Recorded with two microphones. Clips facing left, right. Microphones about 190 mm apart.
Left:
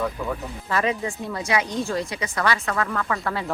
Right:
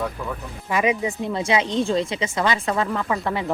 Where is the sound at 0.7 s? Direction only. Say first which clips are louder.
Right 3 dB; 15° right (ahead or behind).